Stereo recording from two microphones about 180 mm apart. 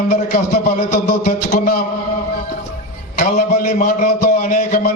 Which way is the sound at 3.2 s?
50° left (ahead or behind).